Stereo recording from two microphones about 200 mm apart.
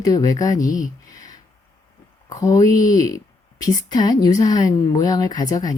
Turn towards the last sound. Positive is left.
turn(degrees=20)  # may be behind; listen again after turning